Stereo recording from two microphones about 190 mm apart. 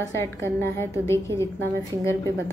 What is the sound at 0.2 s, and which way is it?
A woman's voice, 15° left (ahead or behind).